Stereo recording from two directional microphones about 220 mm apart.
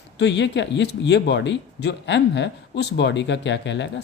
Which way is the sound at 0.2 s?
55° left (ahead or behind).